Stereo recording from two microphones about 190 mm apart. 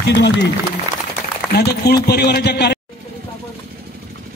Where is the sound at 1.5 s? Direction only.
60° left (ahead or behind).